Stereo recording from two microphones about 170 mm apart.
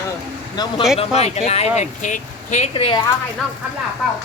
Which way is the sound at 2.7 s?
30° left (ahead or behind).